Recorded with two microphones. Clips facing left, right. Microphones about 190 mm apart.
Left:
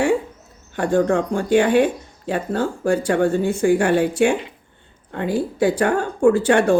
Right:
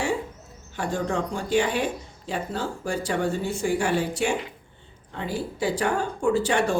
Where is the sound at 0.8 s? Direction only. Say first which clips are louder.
Left 9 dB; 55° left (ahead or behind).